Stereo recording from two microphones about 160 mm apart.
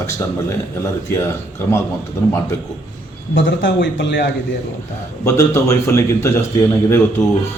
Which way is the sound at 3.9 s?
90° left.